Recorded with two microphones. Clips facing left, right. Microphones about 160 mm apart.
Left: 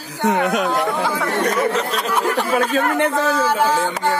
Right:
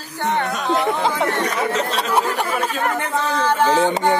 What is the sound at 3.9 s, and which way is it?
Speech, 20° right (ahead or behind).